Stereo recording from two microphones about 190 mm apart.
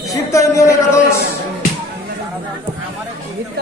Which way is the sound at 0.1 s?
15° left (ahead or behind).